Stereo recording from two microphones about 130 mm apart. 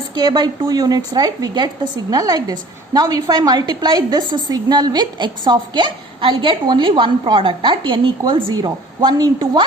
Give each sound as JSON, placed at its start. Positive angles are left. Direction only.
{"t": 0.1, "sound": "a woman's voice", "side_deg": -30}